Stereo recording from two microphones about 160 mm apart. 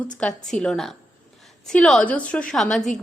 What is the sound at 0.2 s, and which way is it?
A woman's voice, 5° left (ahead or behind).